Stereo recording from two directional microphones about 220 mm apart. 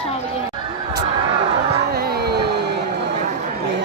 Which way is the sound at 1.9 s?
45° right (ahead or behind).